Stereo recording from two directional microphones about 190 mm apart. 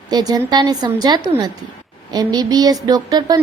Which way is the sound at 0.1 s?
20° right (ahead or behind).